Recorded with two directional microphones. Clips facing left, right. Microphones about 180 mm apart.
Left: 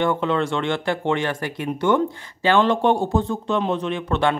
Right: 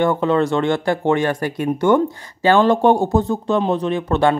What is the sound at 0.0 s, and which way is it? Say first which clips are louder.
Speech: right 4 dB; 40° right (ahead or behind).